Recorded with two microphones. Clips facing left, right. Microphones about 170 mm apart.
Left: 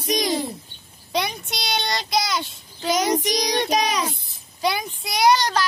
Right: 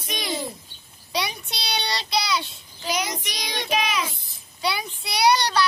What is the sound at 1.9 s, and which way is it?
Child singing, 50° left (ahead or behind).